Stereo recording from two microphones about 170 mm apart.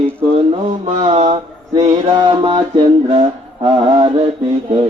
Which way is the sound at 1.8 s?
35° right (ahead or behind).